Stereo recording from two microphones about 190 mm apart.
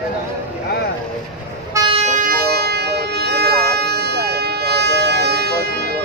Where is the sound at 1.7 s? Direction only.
25° right (ahead or behind).